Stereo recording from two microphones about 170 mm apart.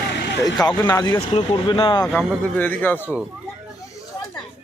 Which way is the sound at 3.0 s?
5° right (ahead or behind).